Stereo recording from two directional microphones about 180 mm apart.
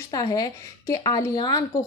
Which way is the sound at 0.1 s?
20° left (ahead or behind).